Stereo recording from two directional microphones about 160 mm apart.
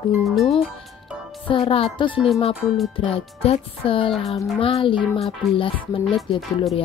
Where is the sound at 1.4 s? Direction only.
35° left (ahead or behind).